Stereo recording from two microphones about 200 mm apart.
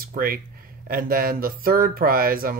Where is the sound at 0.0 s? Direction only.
45° right (ahead or behind).